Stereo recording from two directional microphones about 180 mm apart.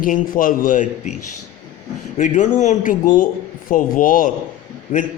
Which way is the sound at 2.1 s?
45° left (ahead or behind).